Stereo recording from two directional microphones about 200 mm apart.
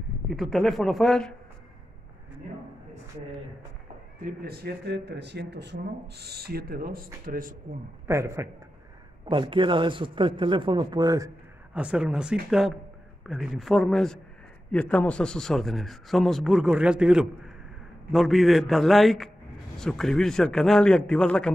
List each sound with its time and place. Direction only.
0.3 s speech: centre (ahead or behind)
4.2 s speech: 50° right (ahead or behind)
8.1 s a man's voice: 15° right (ahead or behind)
9.2 s a man's voice: 25° right (ahead or behind)
11.7 s speech: 5° right (ahead or behind)